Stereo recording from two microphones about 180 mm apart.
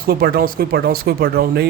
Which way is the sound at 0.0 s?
55° right (ahead or behind).